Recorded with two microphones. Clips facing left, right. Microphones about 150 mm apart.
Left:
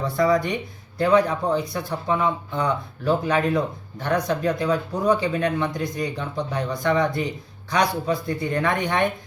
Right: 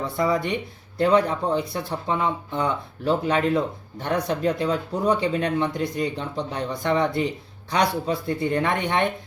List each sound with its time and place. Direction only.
0.2 s speech: 25° right (ahead or behind)